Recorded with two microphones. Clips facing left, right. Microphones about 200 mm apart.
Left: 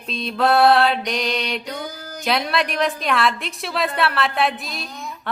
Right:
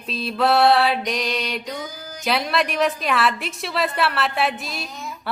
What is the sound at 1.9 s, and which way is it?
Music, 65° left (ahead or behind).